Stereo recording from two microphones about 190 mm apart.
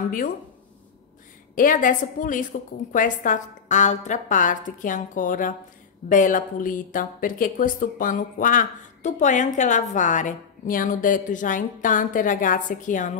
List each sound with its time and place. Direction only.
1.5 s speech: 45° left (ahead or behind)